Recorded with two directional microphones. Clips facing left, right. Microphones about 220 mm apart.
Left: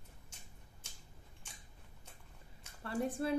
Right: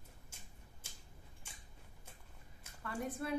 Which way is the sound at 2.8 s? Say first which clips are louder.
Left 5 dB; 30° left (ahead or behind).